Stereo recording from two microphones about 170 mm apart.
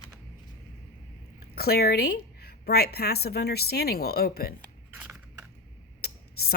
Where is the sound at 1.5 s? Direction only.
65° left (ahead or behind).